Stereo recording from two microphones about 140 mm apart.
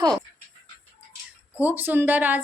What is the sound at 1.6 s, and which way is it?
Speech, 10° right (ahead or behind).